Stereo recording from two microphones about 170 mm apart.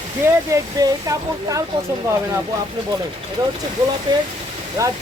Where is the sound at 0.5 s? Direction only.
20° right (ahead or behind).